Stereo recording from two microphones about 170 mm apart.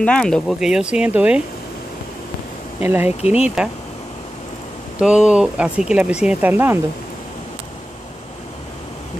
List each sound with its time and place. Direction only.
0.0 s speech: 5° left (ahead or behind)
2.8 s speech: 10° right (ahead or behind)
4.9 s speech: 5° right (ahead or behind)